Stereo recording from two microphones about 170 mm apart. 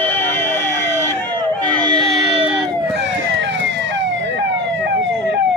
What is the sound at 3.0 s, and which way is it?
Emergency vehicle, 90° right.